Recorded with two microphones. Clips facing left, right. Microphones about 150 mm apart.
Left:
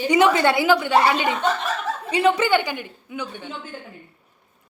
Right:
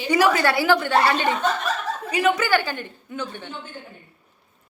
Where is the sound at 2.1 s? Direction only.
25° left (ahead or behind); by 3.5 s 10° left (ahead or behind).